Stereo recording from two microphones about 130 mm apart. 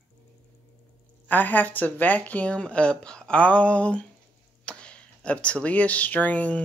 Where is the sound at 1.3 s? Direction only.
15° left (ahead or behind).